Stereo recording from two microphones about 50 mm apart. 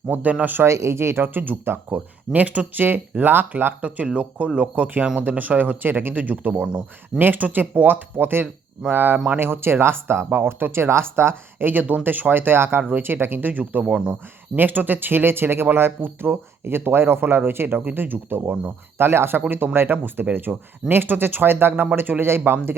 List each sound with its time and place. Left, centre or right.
0.1 s speech: right
0.6 s speech: right
1.9 s speech: right
3.8 s speech: right
5.0 s speech: right
9.1 s speech: right
9.4 s speech: right
11.6 s speech: right
20.5 s speech: centre
20.9 s speech: right